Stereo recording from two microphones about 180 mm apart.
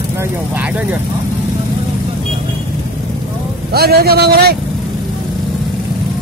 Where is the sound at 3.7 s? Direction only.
60° right (ahead or behind).